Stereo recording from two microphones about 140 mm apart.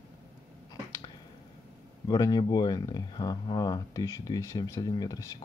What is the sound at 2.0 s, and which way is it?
Speech, 30° left (ahead or behind).